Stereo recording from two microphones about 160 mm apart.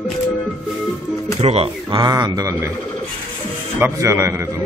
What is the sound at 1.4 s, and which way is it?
A man's voice, 35° right (ahead or behind).